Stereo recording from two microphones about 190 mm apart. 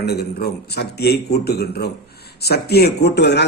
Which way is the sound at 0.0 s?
55° left (ahead or behind).